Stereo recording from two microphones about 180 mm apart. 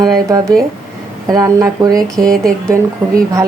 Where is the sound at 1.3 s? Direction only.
20° right (ahead or behind).